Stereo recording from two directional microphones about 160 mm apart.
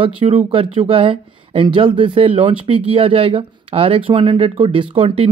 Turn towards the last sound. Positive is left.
turn(degrees=-35)  # may be behind; listen again after turning